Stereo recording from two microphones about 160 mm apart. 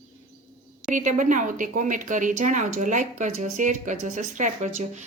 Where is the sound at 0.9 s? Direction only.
55° right (ahead or behind).